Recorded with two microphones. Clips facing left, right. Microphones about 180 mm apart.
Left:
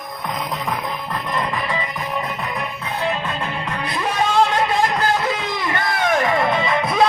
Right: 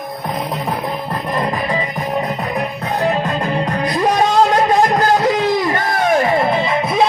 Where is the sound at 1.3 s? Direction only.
35° right (ahead or behind).